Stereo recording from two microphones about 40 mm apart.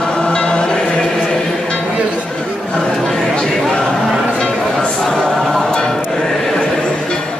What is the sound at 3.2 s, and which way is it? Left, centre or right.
Chatter, centre.